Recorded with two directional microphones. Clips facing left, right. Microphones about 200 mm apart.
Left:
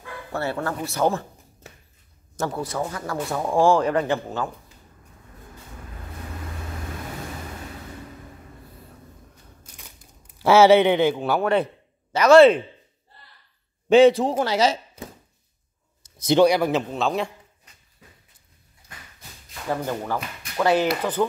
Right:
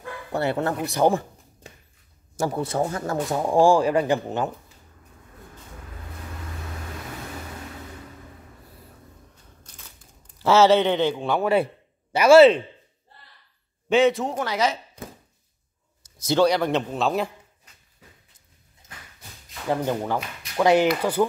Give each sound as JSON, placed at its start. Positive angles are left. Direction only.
{"t": 0.3, "sound": "a man's voice", "side_deg": -20}
{"t": 0.8, "sound": "a sound", "side_deg": -15}
{"t": 2.3, "sound": "speech", "side_deg": -15}
{"t": 2.6, "sound": "a man's voice", "side_deg": -30}
{"t": 3.3, "sound": "speech", "side_deg": -15}
{"t": 9.6, "sound": "crushing", "side_deg": 15}
{"t": 10.4, "sound": "speech", "side_deg": 10}
{"t": 11.5, "sound": "speech", "side_deg": -10}
{"t": 13.8, "sound": "a man's voice", "side_deg": 35}
{"t": 16.3, "sound": "a man's voice", "side_deg": 15}
{"t": 18.8, "sound": "a sound", "side_deg": -20}
{"t": 19.7, "sound": "speech", "side_deg": -15}